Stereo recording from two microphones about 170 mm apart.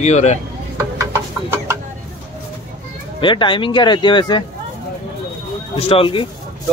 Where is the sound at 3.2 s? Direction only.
30° left (ahead or behind).